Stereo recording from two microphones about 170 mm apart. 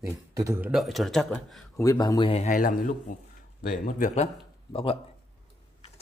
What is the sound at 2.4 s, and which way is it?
A man's voice, 55° left (ahead or behind).